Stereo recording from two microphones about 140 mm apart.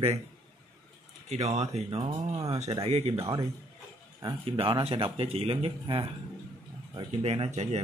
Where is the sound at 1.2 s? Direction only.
50° right (ahead or behind).